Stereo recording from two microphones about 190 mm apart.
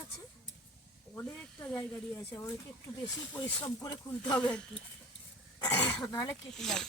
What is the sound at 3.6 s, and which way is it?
Speech, 20° left (ahead or behind).